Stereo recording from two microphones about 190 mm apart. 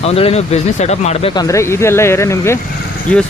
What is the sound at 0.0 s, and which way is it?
Speech, 30° left (ahead or behind).